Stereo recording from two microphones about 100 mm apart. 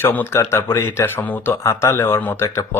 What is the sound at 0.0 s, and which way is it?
Speech, 20° left (ahead or behind).